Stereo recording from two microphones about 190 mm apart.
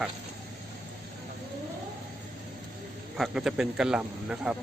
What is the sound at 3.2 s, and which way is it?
A man's voice, centre (ahead or behind).